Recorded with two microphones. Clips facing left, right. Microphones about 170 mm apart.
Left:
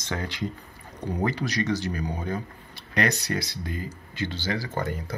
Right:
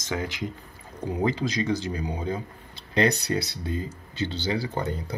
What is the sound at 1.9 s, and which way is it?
Speech, 10° right (ahead or behind).